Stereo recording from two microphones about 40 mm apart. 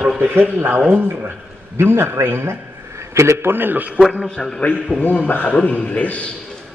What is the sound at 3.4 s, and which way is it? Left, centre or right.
Speech, right.